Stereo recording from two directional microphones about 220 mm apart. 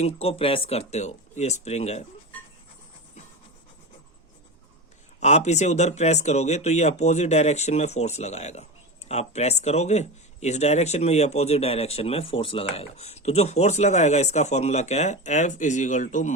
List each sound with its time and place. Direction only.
0.0 s speech: 25° left (ahead or behind)
5.2 s speech: 30° left (ahead or behind)